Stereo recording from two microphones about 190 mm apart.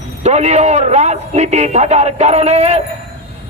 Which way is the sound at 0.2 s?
35° right (ahead or behind).